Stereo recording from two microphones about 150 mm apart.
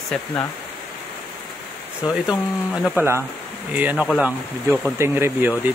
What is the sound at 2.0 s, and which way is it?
Speech, 5° right (ahead or behind).